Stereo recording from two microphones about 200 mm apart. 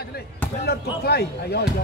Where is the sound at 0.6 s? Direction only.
50° left (ahead or behind).